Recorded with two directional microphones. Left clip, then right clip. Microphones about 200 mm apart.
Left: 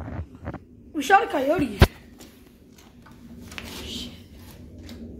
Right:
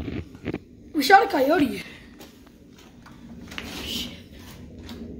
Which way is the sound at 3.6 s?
55° left (ahead or behind).